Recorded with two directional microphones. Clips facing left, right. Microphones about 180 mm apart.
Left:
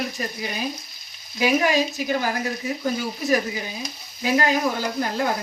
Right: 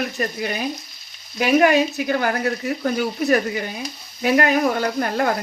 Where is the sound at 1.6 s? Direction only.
65° right (ahead or behind).